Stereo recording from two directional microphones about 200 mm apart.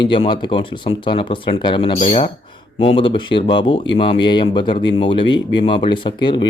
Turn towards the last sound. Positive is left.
turn(degrees=25)  # may be behind; listen again after turning